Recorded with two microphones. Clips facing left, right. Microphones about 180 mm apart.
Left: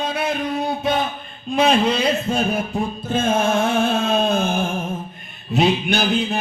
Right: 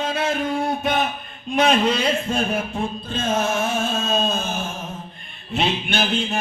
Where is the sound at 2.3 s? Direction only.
35° left (ahead or behind).